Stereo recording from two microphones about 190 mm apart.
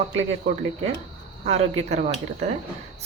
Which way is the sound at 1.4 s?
35° right (ahead or behind).